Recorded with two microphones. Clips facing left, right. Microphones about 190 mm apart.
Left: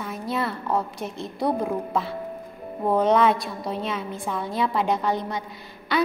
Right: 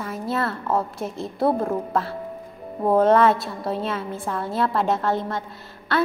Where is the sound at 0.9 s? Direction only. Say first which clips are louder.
Right 3 dB; 35° right (ahead or behind).